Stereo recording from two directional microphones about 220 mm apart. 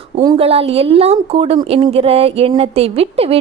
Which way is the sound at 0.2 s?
20° right (ahead or behind).